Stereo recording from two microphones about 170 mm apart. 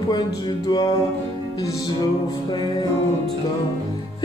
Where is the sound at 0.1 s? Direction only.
25° left (ahead or behind).